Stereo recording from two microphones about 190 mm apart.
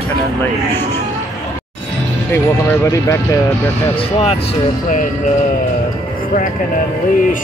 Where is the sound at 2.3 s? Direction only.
15° left (ahead or behind).